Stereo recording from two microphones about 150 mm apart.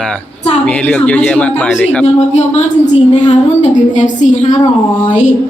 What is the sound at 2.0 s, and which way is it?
A woman's voice, 45° left (ahead or behind).